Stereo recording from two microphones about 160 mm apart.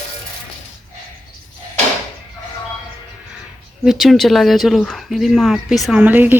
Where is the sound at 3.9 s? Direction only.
Centre (ahead or behind).